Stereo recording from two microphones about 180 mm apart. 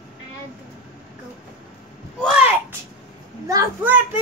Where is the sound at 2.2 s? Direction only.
5° right (ahead or behind).